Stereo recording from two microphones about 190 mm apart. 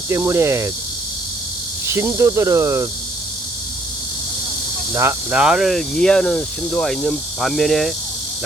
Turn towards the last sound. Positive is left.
turn(degrees=0)  # may be behind; listen again after turning